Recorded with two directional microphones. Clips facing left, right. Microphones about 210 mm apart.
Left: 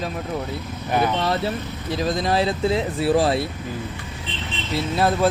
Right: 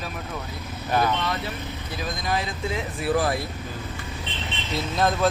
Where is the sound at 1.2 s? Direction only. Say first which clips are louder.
Left 6 dB; 35° left (ahead or behind).